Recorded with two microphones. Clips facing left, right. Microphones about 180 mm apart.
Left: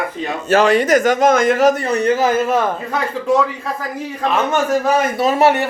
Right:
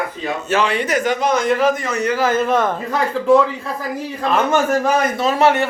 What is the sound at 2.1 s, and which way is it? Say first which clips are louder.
Speech: left 1 dB; 15° left (ahead or behind).